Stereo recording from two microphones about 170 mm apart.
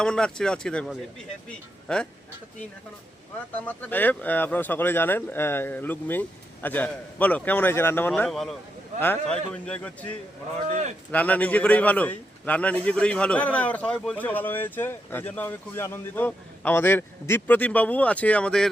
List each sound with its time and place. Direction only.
0.0 s speech: 5° left (ahead or behind)
3.7 s a man's voice: 10° left (ahead or behind)
10.7 s speech: 45° right (ahead or behind)
11.1 s a man's voice: 10° left (ahead or behind)